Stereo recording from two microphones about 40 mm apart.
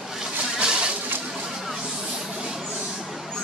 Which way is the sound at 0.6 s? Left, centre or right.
Right.